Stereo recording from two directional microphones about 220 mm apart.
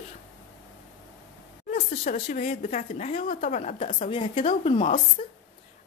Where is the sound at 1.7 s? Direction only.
30° left (ahead or behind).